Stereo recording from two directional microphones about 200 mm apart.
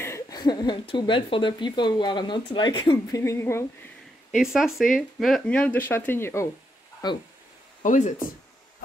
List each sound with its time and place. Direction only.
0.0 s speech: 15° left (ahead or behind)
3.2 s speech: 15° left (ahead or behind)
4.4 s speech: 5° right (ahead or behind); by 7.2 s 20° left (ahead or behind)
7.8 s speech: 40° left (ahead or behind)